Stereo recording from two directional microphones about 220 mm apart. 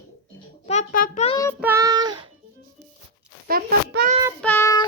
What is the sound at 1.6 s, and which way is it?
Child singing, 15° right (ahead or behind).